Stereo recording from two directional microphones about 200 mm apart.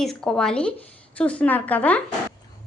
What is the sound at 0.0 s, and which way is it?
A woman's voice, 5° left (ahead or behind).